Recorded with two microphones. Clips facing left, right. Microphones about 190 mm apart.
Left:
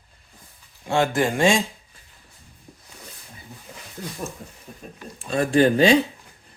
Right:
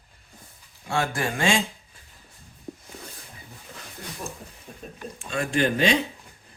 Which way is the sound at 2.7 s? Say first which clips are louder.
Right 11 dB; 60° right (ahead or behind).